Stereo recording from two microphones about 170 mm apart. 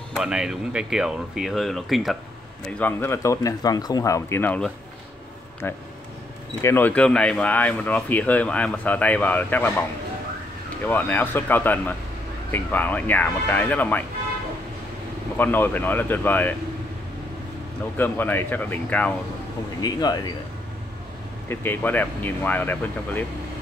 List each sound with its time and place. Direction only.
0.1 s speech: 5° right (ahead or behind)
2.8 s speech: 15° left (ahead or behind)
6.6 s speech: 10° left (ahead or behind)
10.9 s speech: 10° left (ahead or behind)
15.3 s speech: 10° left (ahead or behind)
17.9 s speech: 10° left (ahead or behind)
19.8 s speech: 25° left (ahead or behind)
21.5 s speech: 10° left (ahead or behind)